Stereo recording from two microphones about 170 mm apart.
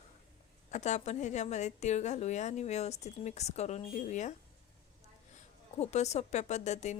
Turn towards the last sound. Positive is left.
turn(degrees=40)  # may be behind; listen again after turning